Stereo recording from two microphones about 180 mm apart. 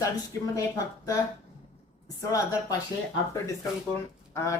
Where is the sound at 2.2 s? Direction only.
20° left (ahead or behind).